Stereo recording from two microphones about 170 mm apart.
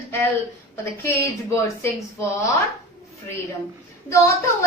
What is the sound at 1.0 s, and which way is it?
Speech, 15° left (ahead or behind).